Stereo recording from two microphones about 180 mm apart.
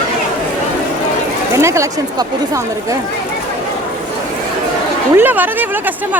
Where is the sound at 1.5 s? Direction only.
15° right (ahead or behind).